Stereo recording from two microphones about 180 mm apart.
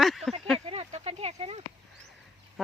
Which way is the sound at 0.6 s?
35° right (ahead or behind).